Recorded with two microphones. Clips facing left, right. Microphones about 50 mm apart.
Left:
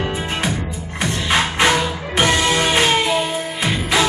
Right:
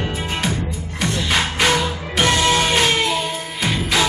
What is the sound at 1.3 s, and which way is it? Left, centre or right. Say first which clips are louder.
Music: left 3 dB; centre.